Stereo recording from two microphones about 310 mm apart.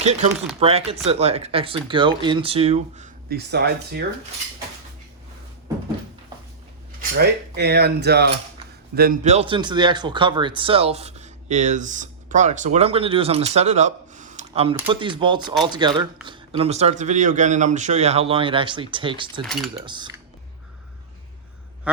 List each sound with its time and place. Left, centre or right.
0.0 s speech: right
7.2 s speech: right; by 19.3 s centre
19.4 s mechanisms: centre
19.8 s speech: centre